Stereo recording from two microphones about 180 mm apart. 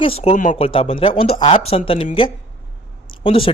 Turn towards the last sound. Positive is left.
turn(degrees=30)  # may be behind; listen again after turning